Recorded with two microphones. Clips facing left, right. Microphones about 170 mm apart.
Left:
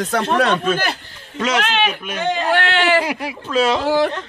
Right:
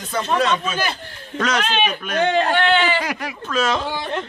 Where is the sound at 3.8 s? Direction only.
80° left.